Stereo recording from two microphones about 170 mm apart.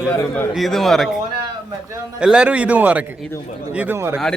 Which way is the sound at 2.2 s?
5° right (ahead or behind).